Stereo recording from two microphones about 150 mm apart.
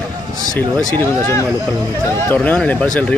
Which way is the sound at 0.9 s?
15° left (ahead or behind).